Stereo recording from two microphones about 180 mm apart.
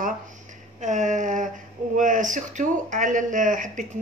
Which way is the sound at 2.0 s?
45° right (ahead or behind).